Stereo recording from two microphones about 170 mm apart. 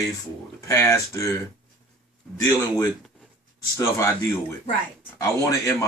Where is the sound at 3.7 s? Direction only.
15° left (ahead or behind).